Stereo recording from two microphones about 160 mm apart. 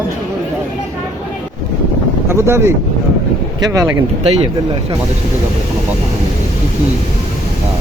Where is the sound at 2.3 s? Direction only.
15° right (ahead or behind).